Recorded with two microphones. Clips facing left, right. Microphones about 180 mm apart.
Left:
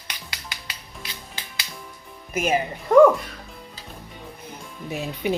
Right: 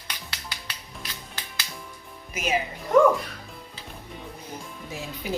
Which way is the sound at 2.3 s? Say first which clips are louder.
Left 5 dB; 50° left (ahead or behind).